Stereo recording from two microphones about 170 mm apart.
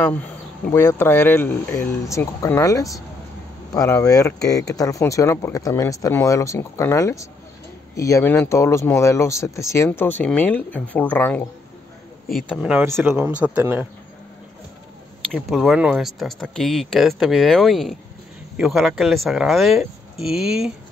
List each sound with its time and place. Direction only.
0.0 s speech: 10° left (ahead or behind)
12.3 s speech: 5° right (ahead or behind)
15.3 s speech: centre (ahead or behind)